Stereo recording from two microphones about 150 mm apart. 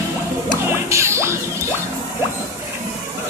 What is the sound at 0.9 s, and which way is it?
Mechanisms, 20° right (ahead or behind).